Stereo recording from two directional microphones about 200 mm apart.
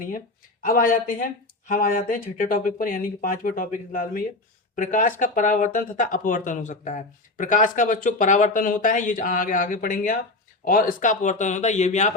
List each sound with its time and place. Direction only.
0.6 s speech: 45° left (ahead or behind)